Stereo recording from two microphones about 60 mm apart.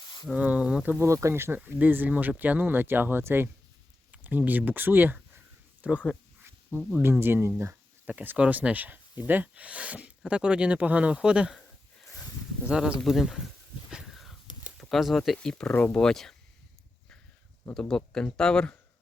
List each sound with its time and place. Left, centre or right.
0.3 s speech: right
0.9 s speech: right
1.5 s speech: right
5.8 s speech: right
6.9 s speech: right
8.0 s speech: right; by 11.5 s centre
12.6 s speech: centre
13.1 s speech: centre
13.9 s a sound: centre
14.8 s speech: centre
15.4 s speech: centre
17.7 s speech: centre